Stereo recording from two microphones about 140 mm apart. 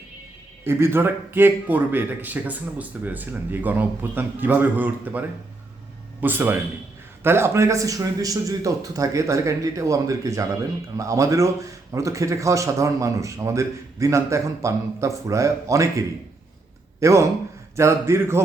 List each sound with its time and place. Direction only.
0.6 s a man's voice: 20° right (ahead or behind)